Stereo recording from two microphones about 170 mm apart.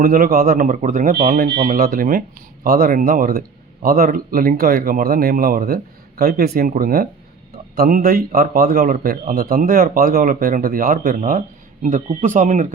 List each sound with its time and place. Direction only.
0.0 s a man's voice: 60° right (ahead or behind)